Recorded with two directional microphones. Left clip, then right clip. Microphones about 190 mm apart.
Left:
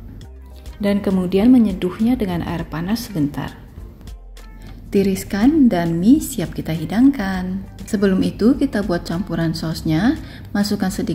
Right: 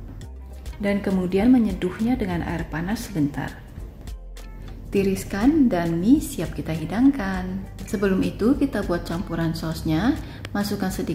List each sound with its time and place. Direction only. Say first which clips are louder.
0.7 s a woman's voice: left 4 dB; 10° left (ahead or behind)
4.9 s a woman's voice: left 4 dB; 15° left (ahead or behind)